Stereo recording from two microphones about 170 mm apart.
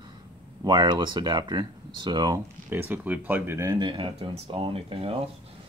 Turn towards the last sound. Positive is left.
turn(degrees=-35)  # may be behind; listen again after turning